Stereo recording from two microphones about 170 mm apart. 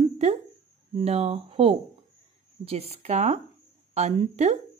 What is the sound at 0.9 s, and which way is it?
A woman's voice, 35° right (ahead or behind).